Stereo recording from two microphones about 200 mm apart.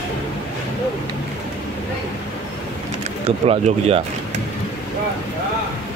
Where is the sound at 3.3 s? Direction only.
30° right (ahead or behind).